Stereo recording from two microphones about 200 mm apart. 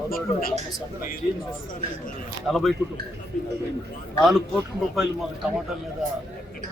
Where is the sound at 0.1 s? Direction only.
45° left (ahead or behind).